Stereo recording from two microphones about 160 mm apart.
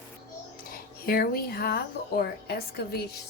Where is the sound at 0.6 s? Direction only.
70° left (ahead or behind).